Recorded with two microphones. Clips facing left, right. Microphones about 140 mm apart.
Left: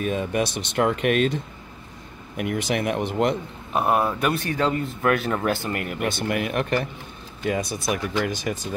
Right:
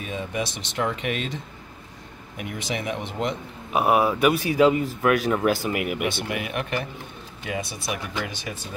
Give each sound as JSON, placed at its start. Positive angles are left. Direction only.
{"t": 0.0, "sound": "speech", "side_deg": 55}
{"t": 3.7, "sound": "speech", "side_deg": -5}
{"t": 6.0, "sound": "speech", "side_deg": 45}